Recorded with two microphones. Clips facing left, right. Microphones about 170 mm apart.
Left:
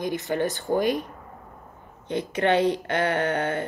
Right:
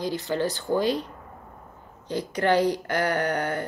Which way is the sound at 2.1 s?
25° left (ahead or behind).